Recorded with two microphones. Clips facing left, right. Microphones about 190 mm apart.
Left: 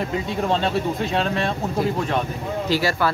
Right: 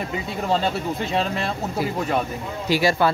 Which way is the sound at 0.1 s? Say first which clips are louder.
Left 1 dB; centre (ahead or behind).